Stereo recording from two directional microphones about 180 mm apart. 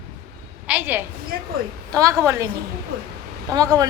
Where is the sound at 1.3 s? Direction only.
60° right (ahead or behind).